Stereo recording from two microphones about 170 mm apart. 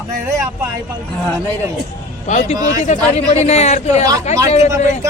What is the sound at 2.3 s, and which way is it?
A man's voice, 45° left (ahead or behind).